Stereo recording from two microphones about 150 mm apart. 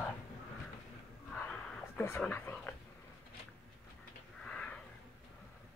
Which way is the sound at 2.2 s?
15° left (ahead or behind).